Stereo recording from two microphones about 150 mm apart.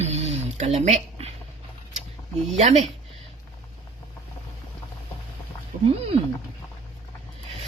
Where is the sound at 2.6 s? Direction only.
50° right (ahead or behind).